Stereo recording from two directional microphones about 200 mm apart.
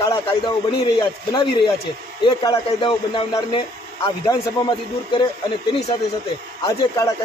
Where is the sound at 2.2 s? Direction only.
25° left (ahead or behind).